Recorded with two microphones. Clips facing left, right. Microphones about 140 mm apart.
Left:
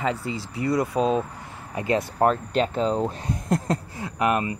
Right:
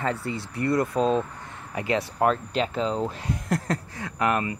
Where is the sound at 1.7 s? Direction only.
30° left (ahead or behind).